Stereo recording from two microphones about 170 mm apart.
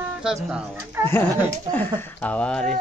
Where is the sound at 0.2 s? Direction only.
5° right (ahead or behind).